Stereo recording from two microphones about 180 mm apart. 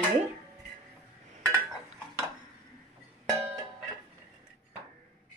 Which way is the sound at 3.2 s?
20° right (ahead or behind).